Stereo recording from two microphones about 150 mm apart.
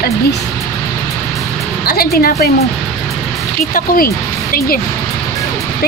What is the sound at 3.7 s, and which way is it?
Speech, 70° left (ahead or behind).